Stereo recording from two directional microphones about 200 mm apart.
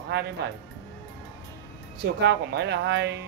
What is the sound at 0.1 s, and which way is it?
Speech, 55° right (ahead or behind).